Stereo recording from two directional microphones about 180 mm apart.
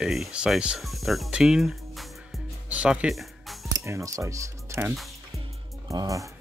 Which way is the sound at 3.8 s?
15° right (ahead or behind).